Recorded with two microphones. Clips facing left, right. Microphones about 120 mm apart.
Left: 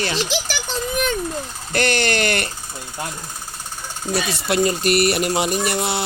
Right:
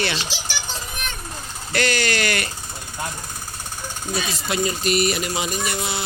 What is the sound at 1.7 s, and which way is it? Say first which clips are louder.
Speech: left 2 dB; 50° left (ahead or behind).